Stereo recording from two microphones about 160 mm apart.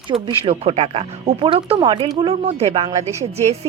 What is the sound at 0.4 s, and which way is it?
A woman's voice, 40° right (ahead or behind).